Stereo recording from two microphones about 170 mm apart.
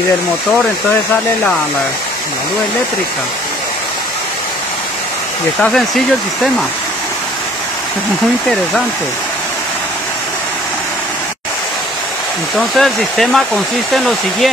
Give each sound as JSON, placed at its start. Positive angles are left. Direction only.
{"t": 5.6, "sound": "speech", "side_deg": 0}
{"t": 12.5, "sound": "speech", "side_deg": 0}